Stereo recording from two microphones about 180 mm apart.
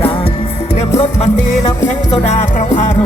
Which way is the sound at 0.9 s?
35° left (ahead or behind).